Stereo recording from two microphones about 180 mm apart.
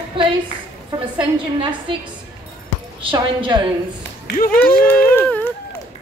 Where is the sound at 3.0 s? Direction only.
30° right (ahead or behind).